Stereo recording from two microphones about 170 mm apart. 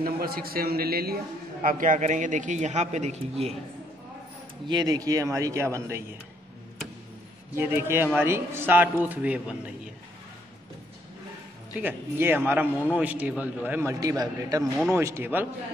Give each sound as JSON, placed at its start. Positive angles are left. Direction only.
{"t": 0.0, "sound": "a man's voice", "side_deg": -60}
{"t": 4.6, "sound": "a man's voice", "side_deg": -25}
{"t": 7.5, "sound": "a man's voice", "side_deg": -15}
{"t": 11.7, "sound": "a man's voice", "side_deg": -10}